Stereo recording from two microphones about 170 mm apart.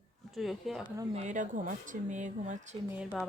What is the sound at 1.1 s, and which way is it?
Speech, 45° right (ahead or behind).